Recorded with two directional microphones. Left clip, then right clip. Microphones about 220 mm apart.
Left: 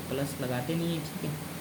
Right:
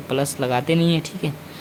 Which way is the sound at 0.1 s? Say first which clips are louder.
Right 12 dB; 40° right (ahead or behind).